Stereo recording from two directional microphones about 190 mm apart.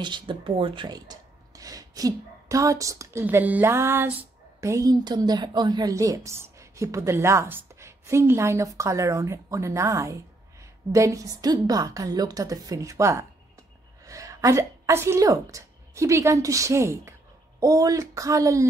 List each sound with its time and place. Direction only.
0.0 s a woman's voice: 25° right (ahead or behind)